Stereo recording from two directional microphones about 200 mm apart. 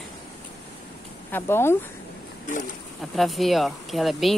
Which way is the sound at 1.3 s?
10° left (ahead or behind).